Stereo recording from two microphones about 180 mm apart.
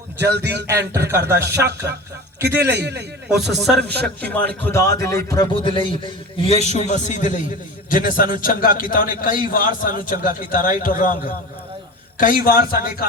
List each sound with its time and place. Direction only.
0.3 s a man's voice: 70° right (ahead or behind)
1.3 s speech: 15° right (ahead or behind)
2.4 s a man's voice: 65° right (ahead or behind)
3.2 s a man's voice: centre (ahead or behind); by 13.1 s 55° left (ahead or behind)